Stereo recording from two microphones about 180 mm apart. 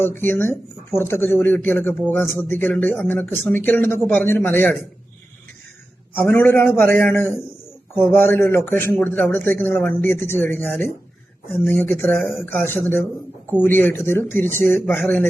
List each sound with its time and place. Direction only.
0.0 s speech: 10° left (ahead or behind)
6.1 s speech: 10° left (ahead or behind)